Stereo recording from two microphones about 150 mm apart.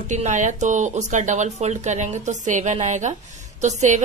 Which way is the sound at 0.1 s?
55° right (ahead or behind).